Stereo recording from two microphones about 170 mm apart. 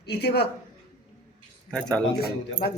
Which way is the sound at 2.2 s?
65° left (ahead or behind).